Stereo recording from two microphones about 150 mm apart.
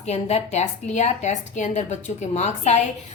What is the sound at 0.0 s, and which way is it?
A woman's voice, 45° left (ahead or behind).